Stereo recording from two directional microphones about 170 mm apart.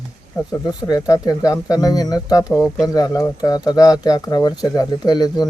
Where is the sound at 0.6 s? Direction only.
20° left (ahead or behind).